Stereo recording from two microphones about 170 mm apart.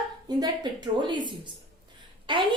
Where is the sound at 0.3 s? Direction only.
25° right (ahead or behind).